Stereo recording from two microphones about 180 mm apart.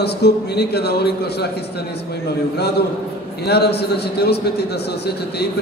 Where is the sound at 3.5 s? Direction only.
65° left (ahead or behind).